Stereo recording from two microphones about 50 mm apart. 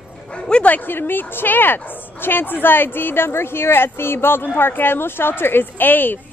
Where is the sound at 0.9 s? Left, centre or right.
Left.